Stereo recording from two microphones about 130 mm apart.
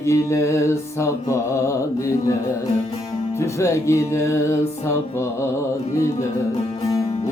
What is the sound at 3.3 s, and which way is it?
Mantra, 25° left (ahead or behind).